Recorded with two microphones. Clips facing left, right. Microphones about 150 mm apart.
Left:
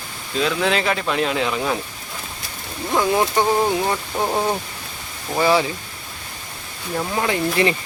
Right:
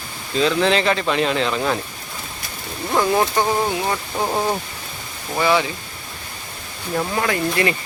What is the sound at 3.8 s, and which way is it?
Speech, centre (ahead or behind).